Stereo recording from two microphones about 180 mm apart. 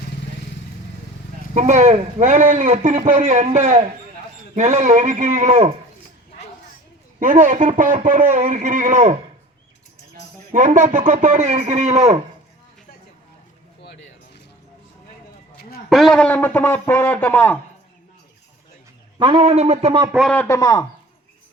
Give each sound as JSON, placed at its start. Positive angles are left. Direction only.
{"t": 1.5, "sound": "a man's voice", "side_deg": -40}
{"t": 7.2, "sound": "a man's voice", "side_deg": -45}
{"t": 10.5, "sound": "a man's voice", "side_deg": -45}
{"t": 13.8, "sound": "a sound", "side_deg": 75}
{"t": 15.9, "sound": "a man's voice", "side_deg": 0}
{"t": 19.2, "sound": "a man's voice", "side_deg": -30}
{"t": 20.3, "sound": "a man's voice", "side_deg": 10}
{"t": 20.6, "sound": "speech", "side_deg": 20}